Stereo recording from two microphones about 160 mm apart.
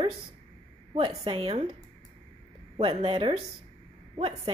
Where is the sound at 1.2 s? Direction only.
35° right (ahead or behind).